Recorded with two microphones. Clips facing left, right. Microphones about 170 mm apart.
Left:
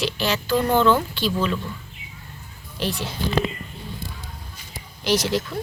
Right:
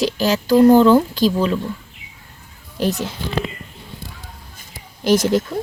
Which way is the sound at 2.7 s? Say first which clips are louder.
Right 6 dB; 45° right (ahead or behind).